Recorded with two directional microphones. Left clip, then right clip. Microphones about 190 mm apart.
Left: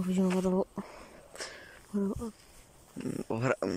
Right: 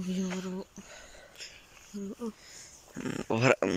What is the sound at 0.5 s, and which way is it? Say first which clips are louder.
Speech: left 11 dB; 35° left (ahead or behind).